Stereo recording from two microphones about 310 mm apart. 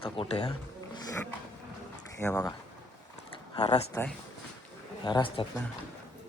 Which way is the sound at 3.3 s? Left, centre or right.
Centre.